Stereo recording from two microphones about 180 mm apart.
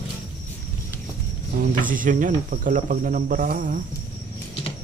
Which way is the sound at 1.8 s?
50° right (ahead or behind).